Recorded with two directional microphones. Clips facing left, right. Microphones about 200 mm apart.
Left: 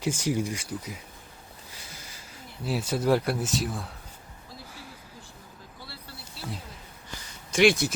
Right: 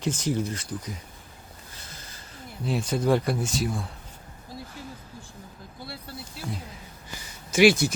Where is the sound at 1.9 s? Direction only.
10° left (ahead or behind).